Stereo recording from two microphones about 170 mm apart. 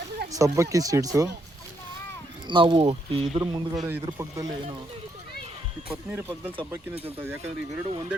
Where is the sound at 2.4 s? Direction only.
30° right (ahead or behind).